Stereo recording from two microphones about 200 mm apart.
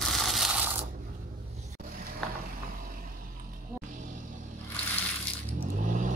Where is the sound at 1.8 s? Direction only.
45° right (ahead or behind).